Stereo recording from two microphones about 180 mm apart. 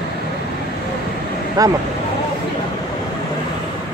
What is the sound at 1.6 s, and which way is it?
Speech, 20° right (ahead or behind).